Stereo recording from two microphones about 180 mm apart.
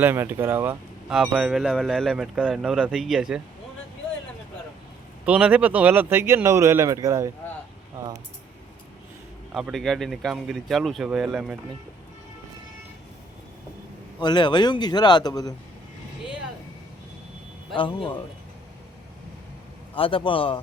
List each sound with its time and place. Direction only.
0.0 s speech: 10° right (ahead or behind)
1.2 s speech: centre (ahead or behind)
5.2 s speech: 10° right (ahead or behind)
9.5 s speech: 5° right (ahead or behind)
14.2 s a man's voice: 25° left (ahead or behind)
17.7 s a man's voice: 30° left (ahead or behind)
20.0 s a man's voice: 30° left (ahead or behind)